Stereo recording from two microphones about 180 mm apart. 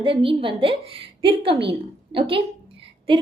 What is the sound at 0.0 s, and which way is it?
A woman's voice, 30° right (ahead or behind).